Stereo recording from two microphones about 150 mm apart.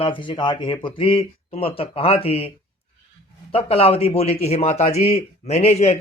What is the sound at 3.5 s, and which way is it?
A man's voice, 40° left (ahead or behind).